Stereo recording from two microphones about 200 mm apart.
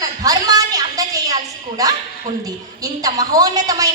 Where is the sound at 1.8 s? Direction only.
15° right (ahead or behind).